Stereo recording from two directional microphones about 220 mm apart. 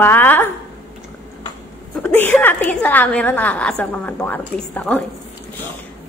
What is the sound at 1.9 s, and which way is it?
A woman's voice, 10° left (ahead or behind).